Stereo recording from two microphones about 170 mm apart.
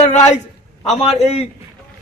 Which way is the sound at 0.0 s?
40° left (ahead or behind).